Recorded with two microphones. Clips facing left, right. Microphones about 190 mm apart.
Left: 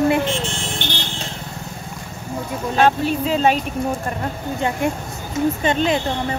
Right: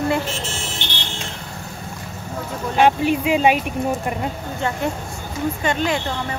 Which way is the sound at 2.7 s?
15° right (ahead or behind).